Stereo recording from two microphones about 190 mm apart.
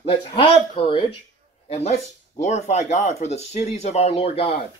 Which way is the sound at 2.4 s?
40° left (ahead or behind).